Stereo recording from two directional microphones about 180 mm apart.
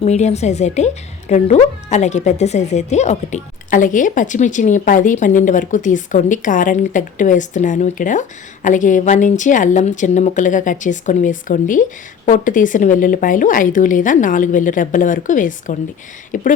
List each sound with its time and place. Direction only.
0.0 s speech: 40° left (ahead or behind)